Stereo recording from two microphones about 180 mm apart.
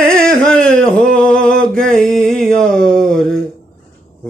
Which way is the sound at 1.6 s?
5° left (ahead or behind).